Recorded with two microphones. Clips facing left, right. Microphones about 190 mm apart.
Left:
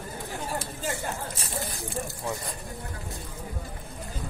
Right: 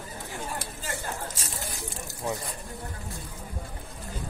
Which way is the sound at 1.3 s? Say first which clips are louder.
Left 4 dB; 90° right.